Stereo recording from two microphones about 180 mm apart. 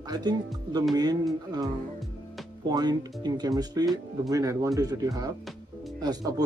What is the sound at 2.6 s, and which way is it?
Speech, 25° right (ahead or behind).